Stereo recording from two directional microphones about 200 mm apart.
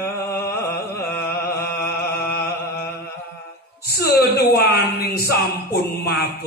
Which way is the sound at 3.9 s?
50° left (ahead or behind).